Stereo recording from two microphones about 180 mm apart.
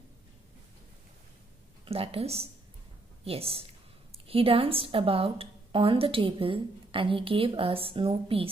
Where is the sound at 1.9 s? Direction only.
30° right (ahead or behind).